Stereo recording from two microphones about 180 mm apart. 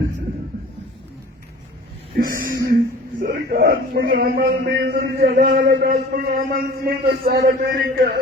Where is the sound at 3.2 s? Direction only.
60° right (ahead or behind).